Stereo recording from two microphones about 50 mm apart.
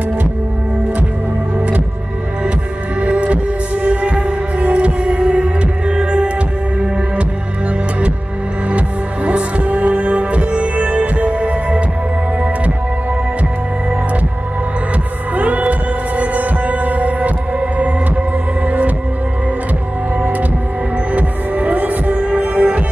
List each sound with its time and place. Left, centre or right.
3.0 s heart sounds: right
8.6 s music: right
15.3 s heart sounds: right
18.7 s music: right
21.1 s music: right